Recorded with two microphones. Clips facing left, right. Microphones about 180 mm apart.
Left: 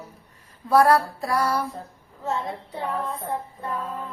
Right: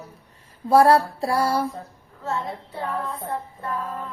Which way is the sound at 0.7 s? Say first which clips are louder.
Right 2 dB; 25° right (ahead or behind).